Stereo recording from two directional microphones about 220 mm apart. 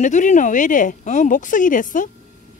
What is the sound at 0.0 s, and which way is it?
Speech, 35° left (ahead or behind).